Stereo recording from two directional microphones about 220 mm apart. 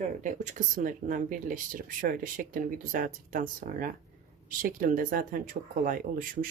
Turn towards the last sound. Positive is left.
turn(degrees=-40)  # may be behind; listen again after turning